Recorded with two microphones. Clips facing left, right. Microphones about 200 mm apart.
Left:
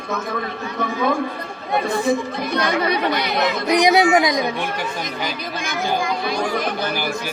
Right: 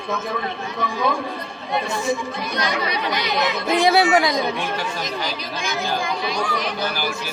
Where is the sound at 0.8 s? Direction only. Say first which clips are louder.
Left 2 dB; 50° left (ahead or behind).